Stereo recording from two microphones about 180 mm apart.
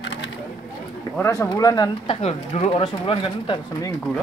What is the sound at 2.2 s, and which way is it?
Speech, 35° left (ahead or behind).